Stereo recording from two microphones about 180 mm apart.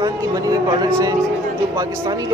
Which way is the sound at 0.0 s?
20° right (ahead or behind).